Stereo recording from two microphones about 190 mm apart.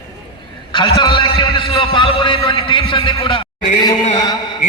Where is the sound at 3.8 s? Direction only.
20° left (ahead or behind).